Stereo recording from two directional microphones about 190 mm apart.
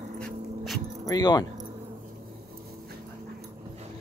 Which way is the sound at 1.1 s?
20° left (ahead or behind).